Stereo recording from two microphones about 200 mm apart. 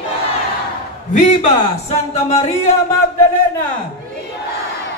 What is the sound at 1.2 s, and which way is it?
Speech, 35° left (ahead or behind).